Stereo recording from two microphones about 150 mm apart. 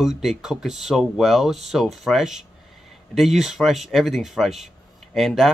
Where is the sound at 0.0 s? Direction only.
Centre (ahead or behind).